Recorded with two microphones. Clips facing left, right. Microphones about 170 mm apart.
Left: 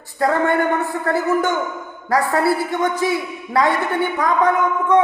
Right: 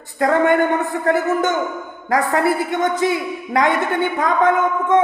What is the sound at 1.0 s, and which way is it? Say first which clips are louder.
A woman's voice: right 1 dB; 20° right (ahead or behind).